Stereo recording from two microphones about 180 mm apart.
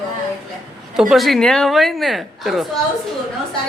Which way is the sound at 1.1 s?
Centre (ahead or behind).